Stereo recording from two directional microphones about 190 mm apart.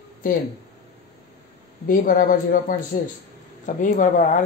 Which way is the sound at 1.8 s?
45° left (ahead or behind).